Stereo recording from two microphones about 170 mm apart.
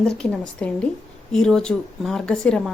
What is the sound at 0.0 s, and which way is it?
A woman's voice, 5° left (ahead or behind).